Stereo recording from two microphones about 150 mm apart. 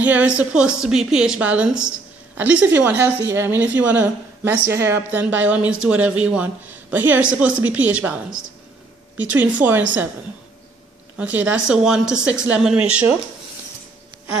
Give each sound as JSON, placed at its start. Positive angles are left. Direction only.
{"t": 0.0, "sound": "a woman's voice", "side_deg": -10}
{"t": 9.1, "sound": "a woman's voice", "side_deg": -10}
{"t": 11.1, "sound": "a woman's voice", "side_deg": -10}